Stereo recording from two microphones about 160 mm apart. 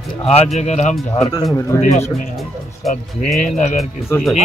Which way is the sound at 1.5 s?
20° left (ahead or behind).